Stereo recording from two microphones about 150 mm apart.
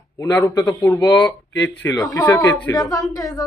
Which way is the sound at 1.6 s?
15° left (ahead or behind).